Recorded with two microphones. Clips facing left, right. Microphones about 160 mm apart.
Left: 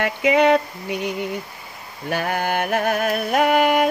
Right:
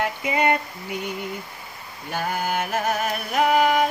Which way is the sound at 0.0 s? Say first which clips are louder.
Left 6 dB; 80° left.